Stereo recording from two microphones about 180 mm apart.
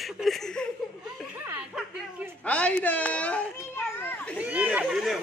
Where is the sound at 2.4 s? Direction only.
5° left (ahead or behind).